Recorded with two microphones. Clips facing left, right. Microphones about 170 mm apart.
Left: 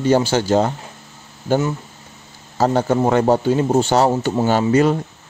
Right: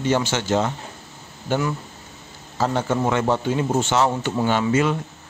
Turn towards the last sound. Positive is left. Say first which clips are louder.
# left 5 dB
turn(degrees=40)  # may be behind; listen again after turning